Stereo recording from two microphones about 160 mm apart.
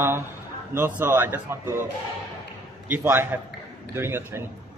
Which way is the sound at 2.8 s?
10° right (ahead or behind).